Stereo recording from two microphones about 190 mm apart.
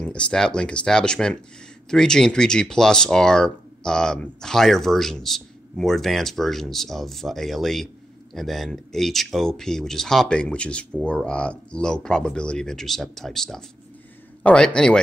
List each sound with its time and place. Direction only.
0.0 s speech: 5° left (ahead or behind)